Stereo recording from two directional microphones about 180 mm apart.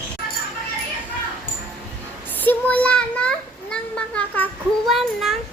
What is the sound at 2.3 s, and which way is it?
A child's voice, 10° left (ahead or behind).